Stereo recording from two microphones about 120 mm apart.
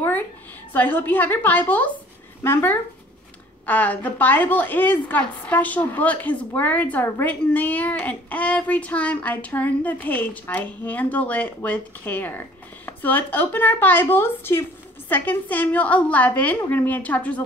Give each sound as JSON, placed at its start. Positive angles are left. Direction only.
{"t": 0.7, "sound": "a woman's voice", "side_deg": 15}